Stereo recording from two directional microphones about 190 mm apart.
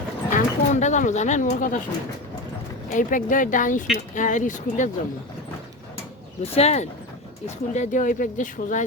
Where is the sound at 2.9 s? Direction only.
45° left (ahead or behind).